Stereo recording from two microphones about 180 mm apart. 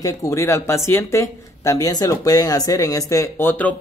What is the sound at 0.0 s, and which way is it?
Speech, 15° left (ahead or behind).